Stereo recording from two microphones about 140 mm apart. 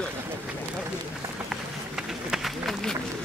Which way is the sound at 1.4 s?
5° right (ahead or behind).